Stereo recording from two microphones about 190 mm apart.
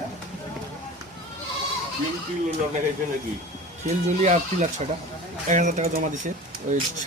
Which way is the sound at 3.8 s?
35° right (ahead or behind).